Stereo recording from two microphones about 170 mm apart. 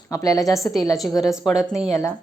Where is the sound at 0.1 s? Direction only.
20° left (ahead or behind).